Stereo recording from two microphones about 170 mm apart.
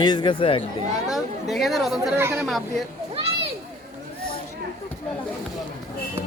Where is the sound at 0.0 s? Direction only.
25° left (ahead or behind).